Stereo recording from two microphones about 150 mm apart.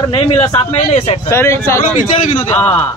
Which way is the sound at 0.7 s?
45° left (ahead or behind).